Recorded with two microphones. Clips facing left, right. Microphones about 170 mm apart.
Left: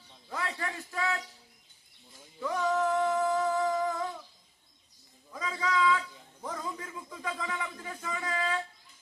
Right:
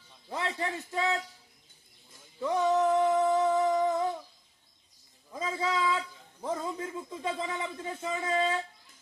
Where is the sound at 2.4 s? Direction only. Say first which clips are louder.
Right 3 dB; 20° right (ahead or behind).